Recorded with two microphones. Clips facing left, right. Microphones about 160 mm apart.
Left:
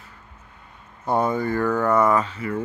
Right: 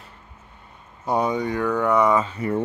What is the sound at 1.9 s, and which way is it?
Speech, 15° right (ahead or behind).